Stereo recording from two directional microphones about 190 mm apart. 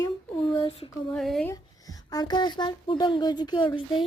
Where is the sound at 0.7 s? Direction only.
30° left (ahead or behind).